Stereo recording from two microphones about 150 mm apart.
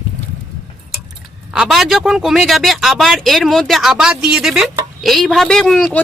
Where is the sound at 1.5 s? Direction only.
Centre (ahead or behind).